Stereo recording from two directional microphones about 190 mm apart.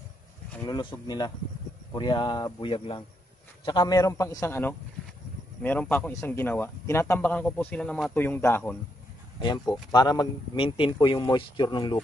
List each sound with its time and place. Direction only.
0.7 s speech: 20° left (ahead or behind)